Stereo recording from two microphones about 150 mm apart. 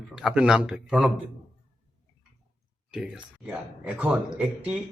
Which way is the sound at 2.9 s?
5° right (ahead or behind).